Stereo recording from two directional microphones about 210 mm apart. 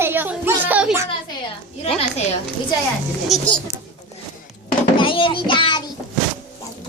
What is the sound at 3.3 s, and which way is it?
Speech, 5° left (ahead or behind).